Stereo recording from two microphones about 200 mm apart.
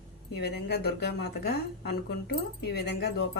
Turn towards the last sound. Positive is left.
turn(degrees=55)  # may be behind; listen again after turning